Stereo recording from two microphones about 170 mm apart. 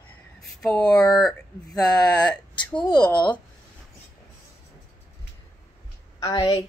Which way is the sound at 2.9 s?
5° left (ahead or behind).